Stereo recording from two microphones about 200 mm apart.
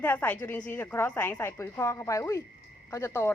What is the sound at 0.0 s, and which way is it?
A woman's voice, 10° left (ahead or behind).